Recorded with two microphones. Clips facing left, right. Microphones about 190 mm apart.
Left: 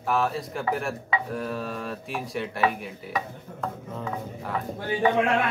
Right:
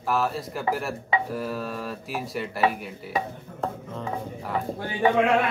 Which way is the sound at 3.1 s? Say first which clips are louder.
Right 3 dB; 30° right (ahead or behind).